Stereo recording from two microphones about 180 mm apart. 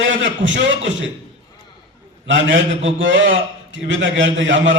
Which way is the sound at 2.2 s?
90° right.